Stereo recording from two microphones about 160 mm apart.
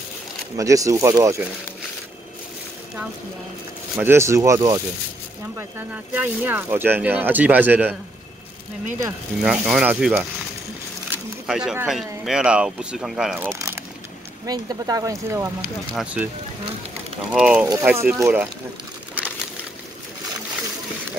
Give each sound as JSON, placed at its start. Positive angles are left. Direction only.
{"t": 0.6, "sound": "speech", "side_deg": -20}
{"t": 3.9, "sound": "speech", "side_deg": -15}
{"t": 9.4, "sound": "speech", "side_deg": -5}
{"t": 11.1, "sound": "a sound", "side_deg": -5}
{"t": 11.9, "sound": "speech", "side_deg": -5}
{"t": 13.6, "sound": "a sound", "side_deg": -20}
{"t": 14.4, "sound": "speech", "side_deg": -25}
{"t": 15.9, "sound": "speech", "side_deg": -5}
{"t": 17.3, "sound": "speech", "side_deg": -5}